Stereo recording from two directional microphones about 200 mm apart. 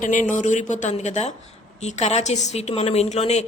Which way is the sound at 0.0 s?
40° left (ahead or behind).